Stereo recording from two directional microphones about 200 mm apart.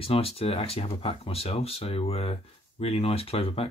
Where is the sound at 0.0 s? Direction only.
30° left (ahead or behind).